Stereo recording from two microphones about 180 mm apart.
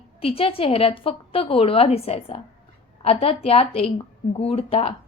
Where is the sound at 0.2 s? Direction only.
30° left (ahead or behind).